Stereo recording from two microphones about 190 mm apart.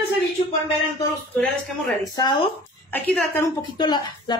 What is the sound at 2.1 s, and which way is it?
Speech, 25° left (ahead or behind).